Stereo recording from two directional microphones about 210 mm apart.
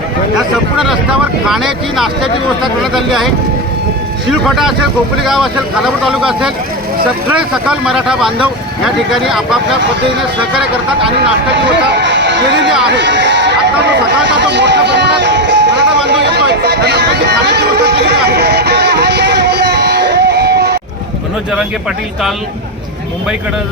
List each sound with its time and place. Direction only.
0.3 s speech: centre (ahead or behind)
4.4 s speech: centre (ahead or behind)
11.9 s a sound: 55° right (ahead or behind)
12.9 s run: 55° right (ahead or behind)
14.1 s music: 55° right (ahead or behind)